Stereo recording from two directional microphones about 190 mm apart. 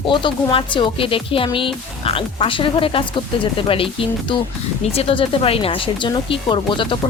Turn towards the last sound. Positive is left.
turn(degrees=25)  # may be behind; listen again after turning